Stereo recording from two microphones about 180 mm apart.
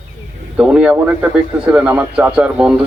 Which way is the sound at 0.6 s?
5° right (ahead or behind).